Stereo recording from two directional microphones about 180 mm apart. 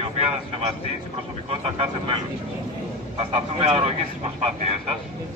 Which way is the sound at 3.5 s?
35° right (ahead or behind).